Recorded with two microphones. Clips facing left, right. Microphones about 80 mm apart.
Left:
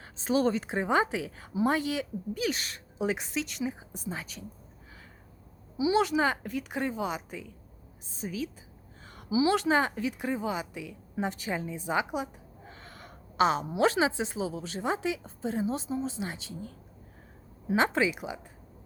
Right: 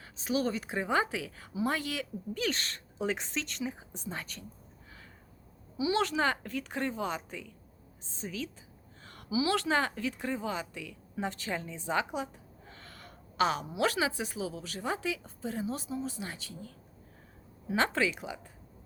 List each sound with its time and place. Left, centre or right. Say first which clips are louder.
0.0 s speech: left 5 dB; left
2.4 s a woman's voice: left 1 dB; centre
5.7 s a woman's voice: left 4 dB; centre
9.3 s a woman's voice: left 4 dB; left